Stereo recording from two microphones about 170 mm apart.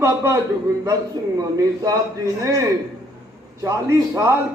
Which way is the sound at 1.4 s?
20° right (ahead or behind).